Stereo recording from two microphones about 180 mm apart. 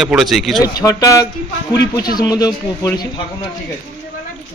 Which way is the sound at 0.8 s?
20° left (ahead or behind).